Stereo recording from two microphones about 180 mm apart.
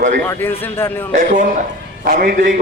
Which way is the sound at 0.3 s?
10° left (ahead or behind).